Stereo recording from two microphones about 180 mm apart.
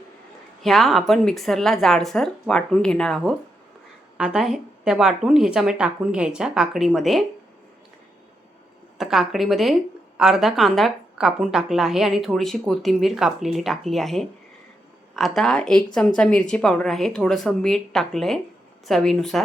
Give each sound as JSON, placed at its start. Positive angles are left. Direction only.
{"t": 0.6, "sound": "a woman's voice", "side_deg": 0}
{"t": 9.0, "sound": "a woman's voice", "side_deg": 0}